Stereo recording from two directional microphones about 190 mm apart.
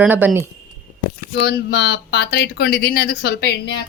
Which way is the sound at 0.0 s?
10° right (ahead or behind).